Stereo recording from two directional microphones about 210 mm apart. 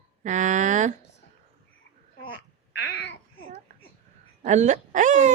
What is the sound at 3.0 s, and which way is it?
Babbling, 60° left (ahead or behind).